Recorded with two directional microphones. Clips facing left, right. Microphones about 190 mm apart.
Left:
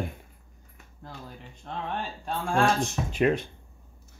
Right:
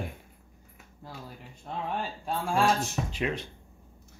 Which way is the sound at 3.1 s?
50° left (ahead or behind).